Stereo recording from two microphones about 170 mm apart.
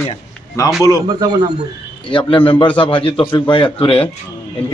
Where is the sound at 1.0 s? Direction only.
25° right (ahead or behind).